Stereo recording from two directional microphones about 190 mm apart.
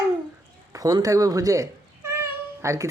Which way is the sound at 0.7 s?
20° right (ahead or behind).